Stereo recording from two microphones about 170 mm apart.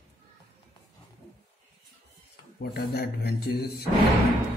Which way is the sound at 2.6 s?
70° left (ahead or behind).